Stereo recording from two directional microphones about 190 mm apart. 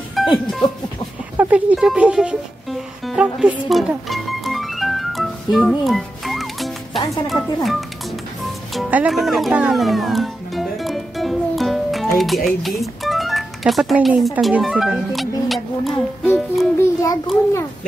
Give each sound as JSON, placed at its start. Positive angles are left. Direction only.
{"t": 0.1, "sound": "music", "side_deg": 0}
{"t": 7.1, "sound": "speech", "side_deg": 0}
{"t": 8.7, "sound": "music", "side_deg": 0}
{"t": 16.8, "sound": "child singing", "side_deg": 15}